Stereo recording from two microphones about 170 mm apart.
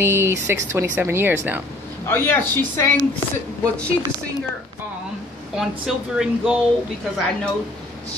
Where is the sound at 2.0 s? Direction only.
10° left (ahead or behind).